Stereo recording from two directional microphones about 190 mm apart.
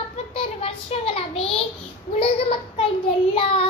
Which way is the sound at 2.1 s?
30° left (ahead or behind).